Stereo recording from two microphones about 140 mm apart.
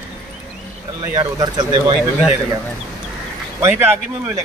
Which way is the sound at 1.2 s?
30° right (ahead or behind).